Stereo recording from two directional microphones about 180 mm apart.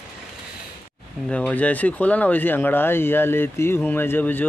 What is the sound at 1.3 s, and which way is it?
Speech, 5° left (ahead or behind).